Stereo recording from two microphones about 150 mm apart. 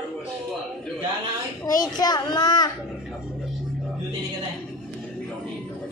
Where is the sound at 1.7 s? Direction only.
25° left (ahead or behind).